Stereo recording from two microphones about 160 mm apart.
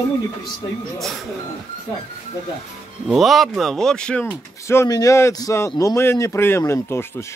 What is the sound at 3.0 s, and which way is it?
Speech, centre (ahead or behind).